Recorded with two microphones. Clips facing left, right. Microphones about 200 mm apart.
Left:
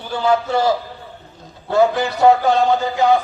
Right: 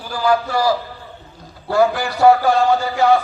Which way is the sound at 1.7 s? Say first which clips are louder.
Left 1 dB; 20° left (ahead or behind).